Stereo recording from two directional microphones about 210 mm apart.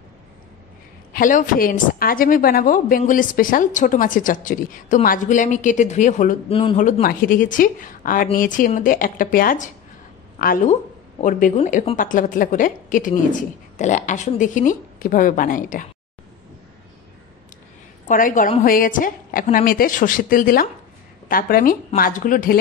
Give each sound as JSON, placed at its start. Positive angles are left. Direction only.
{"t": 1.1, "sound": "a woman's voice", "side_deg": 40}
{"t": 18.0, "sound": "a woman's voice", "side_deg": 40}